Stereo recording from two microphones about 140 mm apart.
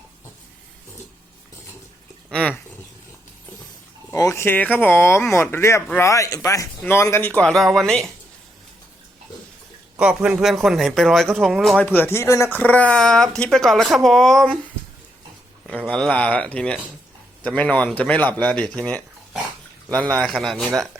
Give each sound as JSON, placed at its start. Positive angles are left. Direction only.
{"t": 2.3, "sound": "a sound", "side_deg": 10}
{"t": 4.2, "sound": "speech", "side_deg": 20}
{"t": 10.0, "sound": "a man's voice", "side_deg": -10}
{"t": 11.8, "sound": "speech", "side_deg": 15}
{"t": 15.6, "sound": "a man's voice", "side_deg": 5}